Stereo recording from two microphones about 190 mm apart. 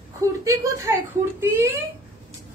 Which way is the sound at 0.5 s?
15° right (ahead or behind).